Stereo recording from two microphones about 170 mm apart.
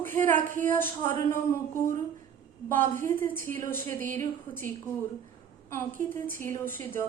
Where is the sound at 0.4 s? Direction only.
50° right (ahead or behind).